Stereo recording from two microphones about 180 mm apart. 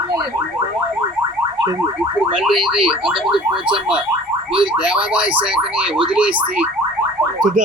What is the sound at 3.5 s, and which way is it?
Car alarm, 30° right (ahead or behind).